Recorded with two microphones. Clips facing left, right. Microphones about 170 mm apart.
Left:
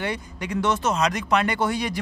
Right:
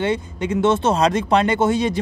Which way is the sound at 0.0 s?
25° right (ahead or behind).